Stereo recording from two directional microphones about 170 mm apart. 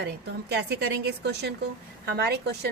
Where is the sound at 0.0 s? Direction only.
75° right (ahead or behind).